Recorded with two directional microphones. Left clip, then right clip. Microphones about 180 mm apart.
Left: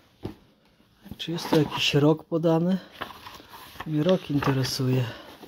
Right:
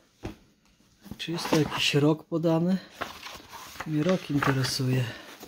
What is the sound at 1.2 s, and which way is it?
Speech, centre (ahead or behind).